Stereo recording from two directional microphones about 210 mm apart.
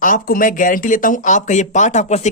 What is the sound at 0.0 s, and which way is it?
Speech, 40° left (ahead or behind).